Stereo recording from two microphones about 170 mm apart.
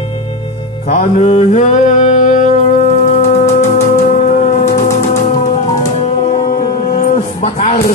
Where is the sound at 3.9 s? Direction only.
45° left (ahead or behind).